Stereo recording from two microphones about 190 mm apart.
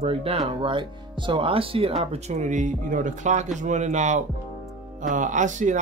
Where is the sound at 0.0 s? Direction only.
30° right (ahead or behind).